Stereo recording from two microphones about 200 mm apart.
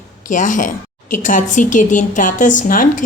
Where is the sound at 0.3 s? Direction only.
40° left (ahead or behind).